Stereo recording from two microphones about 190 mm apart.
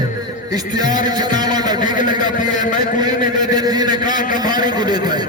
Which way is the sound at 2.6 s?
40° left (ahead or behind).